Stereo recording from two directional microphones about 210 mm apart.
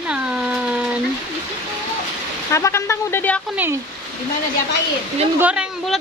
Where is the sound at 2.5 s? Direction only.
15° left (ahead or behind).